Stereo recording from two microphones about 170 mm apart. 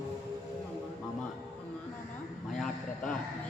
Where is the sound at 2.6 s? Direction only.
Centre (ahead or behind).